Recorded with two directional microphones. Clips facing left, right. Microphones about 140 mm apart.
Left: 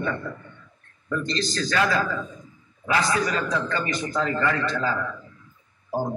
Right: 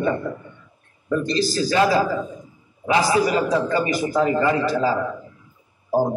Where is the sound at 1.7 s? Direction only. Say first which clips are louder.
Right 5 dB; 25° right (ahead or behind).